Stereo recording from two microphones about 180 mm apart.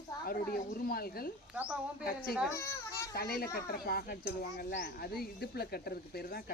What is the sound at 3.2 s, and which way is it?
Speech, 60° left (ahead or behind).